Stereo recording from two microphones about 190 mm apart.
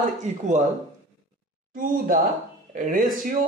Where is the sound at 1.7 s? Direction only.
45° right (ahead or behind).